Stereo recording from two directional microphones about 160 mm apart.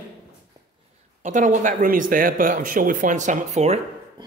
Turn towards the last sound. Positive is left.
turn(degrees=-40)  # may be behind; listen again after turning